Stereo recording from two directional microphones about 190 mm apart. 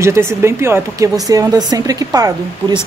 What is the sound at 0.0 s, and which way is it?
Speech, 15° right (ahead or behind).